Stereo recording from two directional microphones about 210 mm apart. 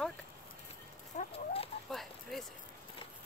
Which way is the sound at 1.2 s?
25° left (ahead or behind).